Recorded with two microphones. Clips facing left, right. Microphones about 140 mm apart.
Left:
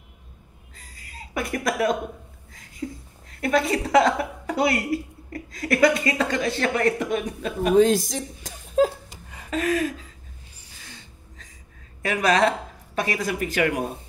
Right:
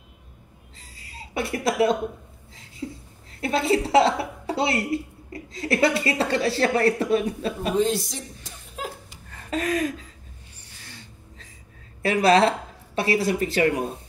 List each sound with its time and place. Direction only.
0.7 s a sound: 25° right (ahead or behind)
3.3 s a woman's voice: 30° right (ahead or behind)
7.8 s speech: 90° left
9.5 s speech: 35° right (ahead or behind)
12.0 s a woman's voice: 35° right (ahead or behind)